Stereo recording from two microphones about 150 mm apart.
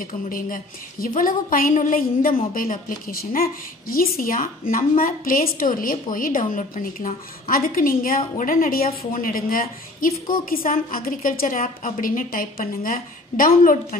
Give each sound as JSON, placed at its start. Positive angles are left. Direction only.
{"t": 0.0, "sound": "a woman's voice", "side_deg": 65}